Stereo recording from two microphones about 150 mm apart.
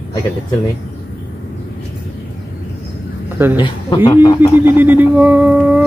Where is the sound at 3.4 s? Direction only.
15° right (ahead or behind).